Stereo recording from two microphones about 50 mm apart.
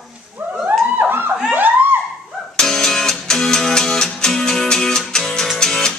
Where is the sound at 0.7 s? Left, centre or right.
Right.